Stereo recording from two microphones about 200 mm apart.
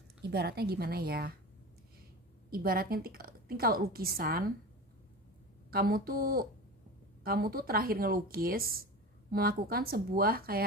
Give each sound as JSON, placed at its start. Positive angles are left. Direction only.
{"t": 0.2, "sound": "a woman's voice", "side_deg": -55}
{"t": 2.5, "sound": "a woman's voice", "side_deg": -50}
{"t": 5.7, "sound": "a woman's voice", "side_deg": -50}